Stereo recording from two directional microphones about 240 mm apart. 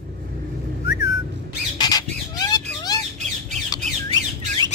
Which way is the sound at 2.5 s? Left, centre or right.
Centre.